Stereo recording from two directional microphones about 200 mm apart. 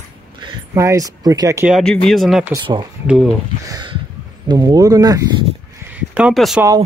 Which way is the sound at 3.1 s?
Centre (ahead or behind).